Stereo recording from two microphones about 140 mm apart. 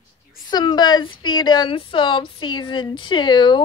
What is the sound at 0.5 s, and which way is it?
Speech, 30° left (ahead or behind).